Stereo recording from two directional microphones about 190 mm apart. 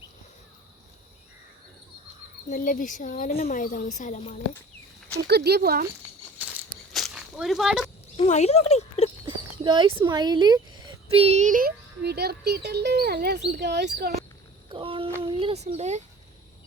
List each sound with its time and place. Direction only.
2.5 s a woman's voice: 45° left (ahead or behind)
5.1 s speech: 60° right (ahead or behind)
6.4 s a sound: 10° right (ahead or behind)
8.1 s speech: 35° left (ahead or behind)
9.2 s speech: 25° right (ahead or behind); by 14.1 s 60° right (ahead or behind)
14.7 s a sound: 25° right (ahead or behind)